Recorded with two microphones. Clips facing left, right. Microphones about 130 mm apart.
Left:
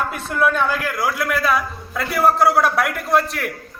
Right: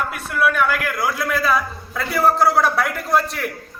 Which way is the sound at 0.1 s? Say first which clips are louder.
Left 1 dB; 25° left (ahead or behind).